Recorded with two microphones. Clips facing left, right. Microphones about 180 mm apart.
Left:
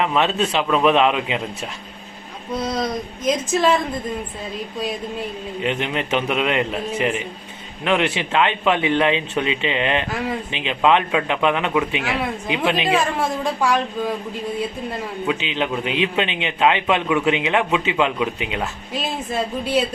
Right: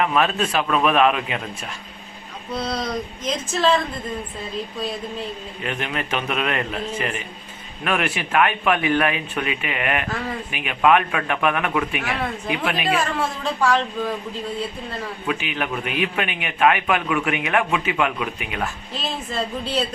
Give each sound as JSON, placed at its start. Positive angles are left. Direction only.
{"t": 0.0, "sound": "a man's voice", "side_deg": 25}
{"t": 5.6, "sound": "a man's voice", "side_deg": 20}
{"t": 15.3, "sound": "a man's voice", "side_deg": 20}